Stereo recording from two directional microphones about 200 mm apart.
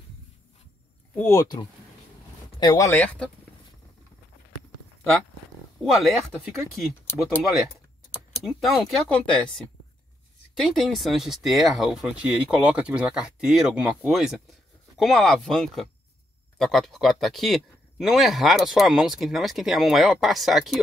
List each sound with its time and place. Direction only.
1.1 s speech: 15° left (ahead or behind)
2.6 s speech: 20° left (ahead or behind)
2.9 s speech: 10° left (ahead or behind)
5.8 s a man's voice: centre (ahead or behind)
8.1 s a man's voice: centre (ahead or behind)